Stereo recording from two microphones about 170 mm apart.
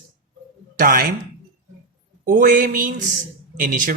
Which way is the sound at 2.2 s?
50° right (ahead or behind).